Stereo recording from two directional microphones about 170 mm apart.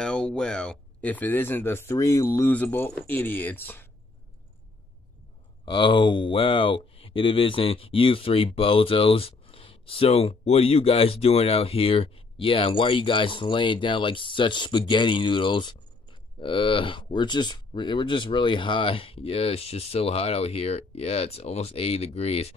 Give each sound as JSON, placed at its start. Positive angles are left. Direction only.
{"t": 0.0, "sound": "speech", "side_deg": 5}
{"t": 5.7, "sound": "speech", "side_deg": 30}